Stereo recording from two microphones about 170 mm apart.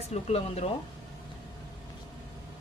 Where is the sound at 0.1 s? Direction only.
35° left (ahead or behind).